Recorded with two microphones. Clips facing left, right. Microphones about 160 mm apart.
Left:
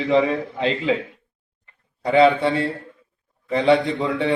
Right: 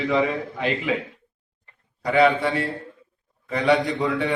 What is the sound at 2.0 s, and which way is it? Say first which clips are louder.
A man's voice: left 3 dB; 25° left (ahead or behind).